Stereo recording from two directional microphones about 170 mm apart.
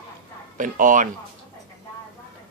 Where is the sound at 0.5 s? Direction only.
50° right (ahead or behind).